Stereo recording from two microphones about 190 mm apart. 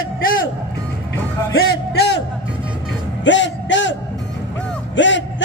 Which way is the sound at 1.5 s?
55° left (ahead or behind).